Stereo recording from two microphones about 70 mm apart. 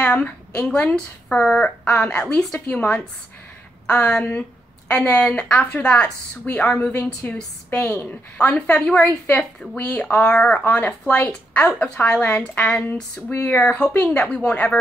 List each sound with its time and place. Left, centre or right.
0.0 s a woman's voice: centre